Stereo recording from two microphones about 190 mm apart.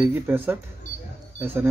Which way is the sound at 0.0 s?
10° right (ahead or behind).